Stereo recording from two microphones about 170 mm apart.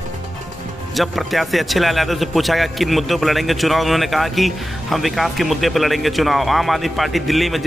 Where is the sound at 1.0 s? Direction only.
Centre (ahead or behind).